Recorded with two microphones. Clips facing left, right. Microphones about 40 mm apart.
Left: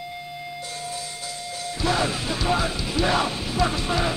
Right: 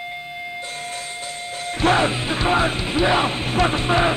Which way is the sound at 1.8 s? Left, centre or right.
Right.